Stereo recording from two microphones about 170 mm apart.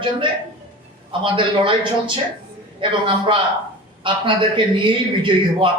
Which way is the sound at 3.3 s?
30° right (ahead or behind).